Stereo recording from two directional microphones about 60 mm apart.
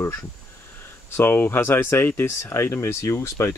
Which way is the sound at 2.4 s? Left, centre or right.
Left.